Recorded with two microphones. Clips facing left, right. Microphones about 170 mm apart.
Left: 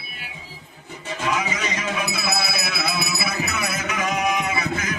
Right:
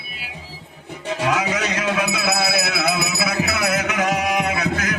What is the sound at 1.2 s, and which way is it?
Music, 70° right (ahead or behind).